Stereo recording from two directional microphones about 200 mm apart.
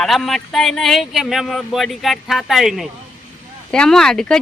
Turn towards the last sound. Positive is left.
turn(degrees=5)  # may be behind; listen again after turning